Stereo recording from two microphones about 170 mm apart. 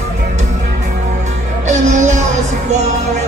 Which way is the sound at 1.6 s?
45° right (ahead or behind).